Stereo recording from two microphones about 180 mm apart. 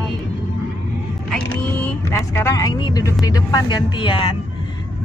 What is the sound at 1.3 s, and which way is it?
Speech, 10° left (ahead or behind).